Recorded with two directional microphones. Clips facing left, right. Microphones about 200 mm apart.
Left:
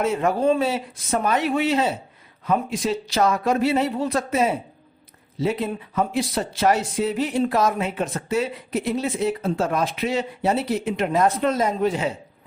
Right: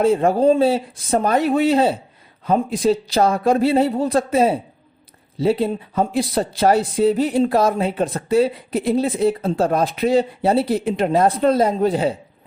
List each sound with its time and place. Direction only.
0.0 s speech: 30° right (ahead or behind)